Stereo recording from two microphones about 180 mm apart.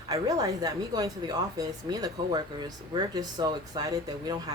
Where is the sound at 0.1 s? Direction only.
20° right (ahead or behind).